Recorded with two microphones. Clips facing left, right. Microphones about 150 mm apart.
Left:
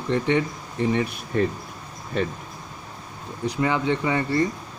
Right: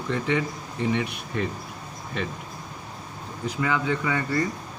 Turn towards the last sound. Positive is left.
turn(degrees=25)  # may be behind; listen again after turning